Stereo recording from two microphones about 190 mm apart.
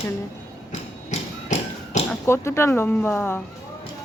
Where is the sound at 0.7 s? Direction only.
40° left (ahead or behind).